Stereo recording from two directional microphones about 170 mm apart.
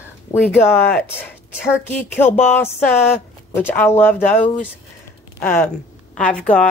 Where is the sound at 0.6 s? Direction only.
10° left (ahead or behind).